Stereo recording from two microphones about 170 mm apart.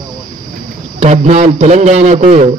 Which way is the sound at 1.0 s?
40° right (ahead or behind).